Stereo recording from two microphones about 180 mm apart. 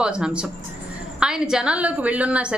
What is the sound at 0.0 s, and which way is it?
A woman's voice, 5° right (ahead or behind).